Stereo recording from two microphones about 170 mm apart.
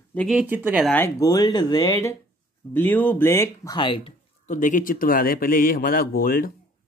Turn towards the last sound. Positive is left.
turn(degrees=60)  # may be behind; listen again after turning